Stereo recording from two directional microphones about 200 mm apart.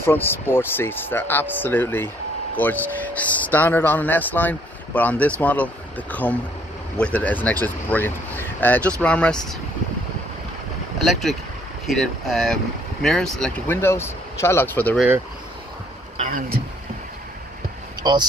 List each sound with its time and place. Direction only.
0.0 s speech: 10° left (ahead or behind)
11.1 s speech: centre (ahead or behind)
16.2 s speech: 45° right (ahead or behind)
18.0 s speech: 20° right (ahead or behind)